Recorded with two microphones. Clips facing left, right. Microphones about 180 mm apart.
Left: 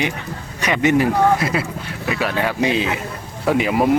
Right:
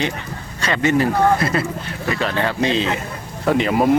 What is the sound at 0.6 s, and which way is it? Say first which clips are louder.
Speech: left 1 dB; 15° left (ahead or behind).